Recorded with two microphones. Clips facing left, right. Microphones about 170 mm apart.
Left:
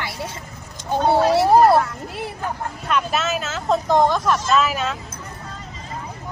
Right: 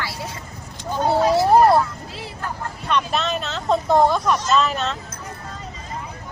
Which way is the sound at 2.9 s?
5° left (ahead or behind).